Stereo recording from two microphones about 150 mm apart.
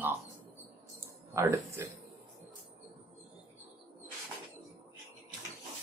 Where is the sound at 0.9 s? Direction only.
20° right (ahead or behind).